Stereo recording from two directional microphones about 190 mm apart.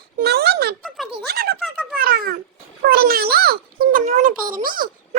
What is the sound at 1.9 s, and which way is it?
Cat, 50° right (ahead or behind).